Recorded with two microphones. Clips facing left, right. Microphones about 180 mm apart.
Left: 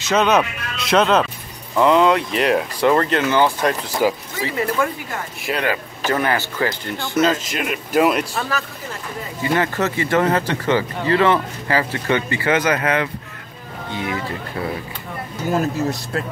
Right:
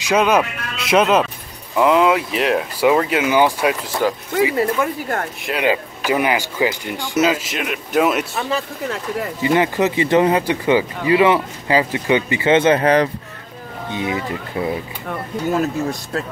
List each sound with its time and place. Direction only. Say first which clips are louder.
0.0 s speech: right 1 dB; 10° right (ahead or behind)
4.0 s speech: left 1 dB; 5° left (ahead or behind)
5.6 s speech: right 6 dB; 10° right (ahead or behind)
9.4 s speech: right 3 dB; 20° right (ahead or behind); by 13.1 s 35° right (ahead or behind)
13.9 s speech: right 2 dB; 20° right (ahead or behind)
15.5 s speech: left 1 dB; centre (ahead or behind)